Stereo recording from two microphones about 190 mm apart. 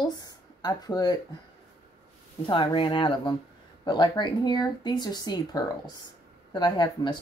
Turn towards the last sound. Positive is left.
turn(degrees=25)  # may be behind; listen again after turning